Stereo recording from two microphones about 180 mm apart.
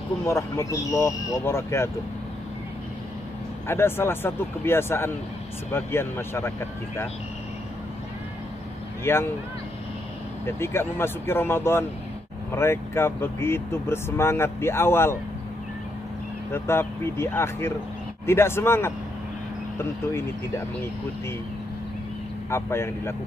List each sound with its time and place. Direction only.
0.2 s speech: 15° left (ahead or behind)
3.6 s speech: 15° left (ahead or behind)
9.0 s speech: 15° left (ahead or behind)
10.4 s speech: 15° left (ahead or behind)
16.5 s speech: 15° left (ahead or behind)
22.5 s speech: 15° left (ahead or behind)